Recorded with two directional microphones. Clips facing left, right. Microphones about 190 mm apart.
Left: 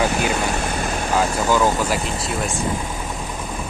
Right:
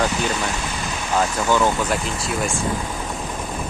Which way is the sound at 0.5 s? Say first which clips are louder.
Left 4 dB; 55° left (ahead or behind).